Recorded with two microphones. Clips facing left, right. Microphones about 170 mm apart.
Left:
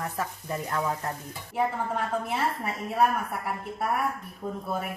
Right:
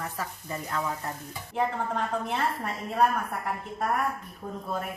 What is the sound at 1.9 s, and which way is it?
A woman's voice, 5° left (ahead or behind).